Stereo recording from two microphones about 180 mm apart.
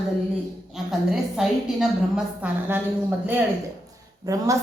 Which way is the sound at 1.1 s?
Centre (ahead or behind).